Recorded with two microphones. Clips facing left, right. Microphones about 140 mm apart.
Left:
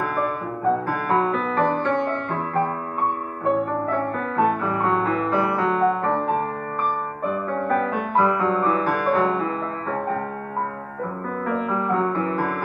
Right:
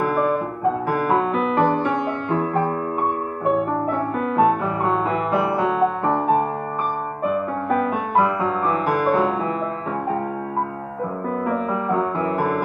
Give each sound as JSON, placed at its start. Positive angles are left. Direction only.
{"t": 1.0, "sound": "music", "side_deg": -15}
{"t": 3.9, "sound": "music", "side_deg": -15}
{"t": 7.7, "sound": "music", "side_deg": -15}
{"t": 11.4, "sound": "music", "side_deg": -15}